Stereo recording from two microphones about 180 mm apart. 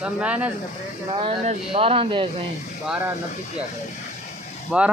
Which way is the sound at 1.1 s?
30° right (ahead or behind).